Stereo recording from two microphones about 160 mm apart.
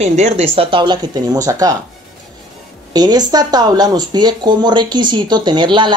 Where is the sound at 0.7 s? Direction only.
25° right (ahead or behind).